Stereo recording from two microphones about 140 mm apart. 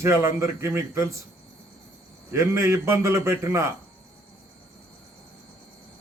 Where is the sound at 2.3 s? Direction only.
20° right (ahead or behind).